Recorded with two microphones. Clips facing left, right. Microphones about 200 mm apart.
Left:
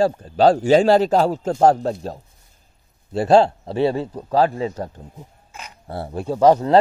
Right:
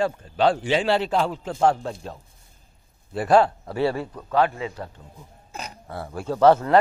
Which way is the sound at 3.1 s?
25° left (ahead or behind).